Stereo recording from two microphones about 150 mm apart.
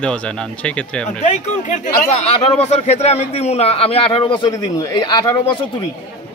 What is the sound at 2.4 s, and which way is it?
Speech, 45° left (ahead or behind).